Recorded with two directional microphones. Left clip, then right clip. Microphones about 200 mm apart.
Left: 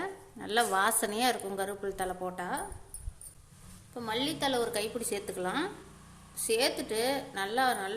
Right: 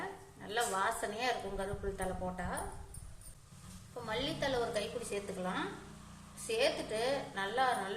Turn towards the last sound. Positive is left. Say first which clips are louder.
# left 4 dB
turn(degrees=55)  # may be behind; listen again after turning